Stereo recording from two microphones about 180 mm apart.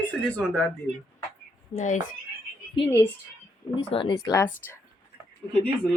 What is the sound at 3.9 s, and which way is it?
Speech, 25° left (ahead or behind).